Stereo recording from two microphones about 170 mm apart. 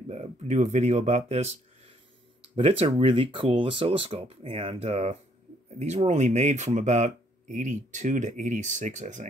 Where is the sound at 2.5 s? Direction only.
35° right (ahead or behind).